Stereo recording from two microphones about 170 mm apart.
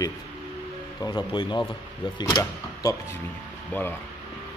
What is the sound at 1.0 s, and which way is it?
Speech, 25° left (ahead or behind).